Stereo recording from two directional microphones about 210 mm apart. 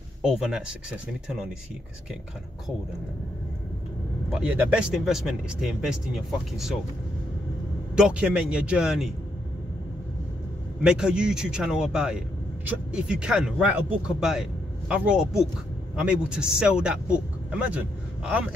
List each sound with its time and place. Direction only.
0.2 s speech: 5° right (ahead or behind)
4.3 s speech: 5° right (ahead or behind)
7.9 s speech: 5° right (ahead or behind)
10.8 s speech: 5° right (ahead or behind)